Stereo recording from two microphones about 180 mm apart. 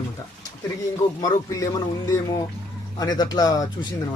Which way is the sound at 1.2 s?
20° left (ahead or behind).